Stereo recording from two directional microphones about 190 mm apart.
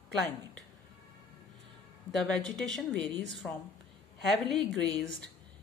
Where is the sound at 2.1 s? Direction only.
Centre (ahead or behind).